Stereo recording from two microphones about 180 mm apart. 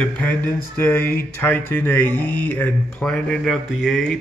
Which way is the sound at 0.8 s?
10° left (ahead or behind).